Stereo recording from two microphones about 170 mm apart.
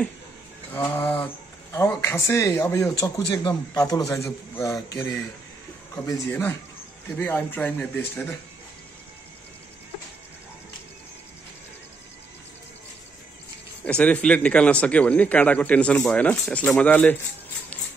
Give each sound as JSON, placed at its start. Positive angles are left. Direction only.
{"t": 0.7, "sound": "a man's voice", "side_deg": 10}
{"t": 13.8, "sound": "a man's voice", "side_deg": 10}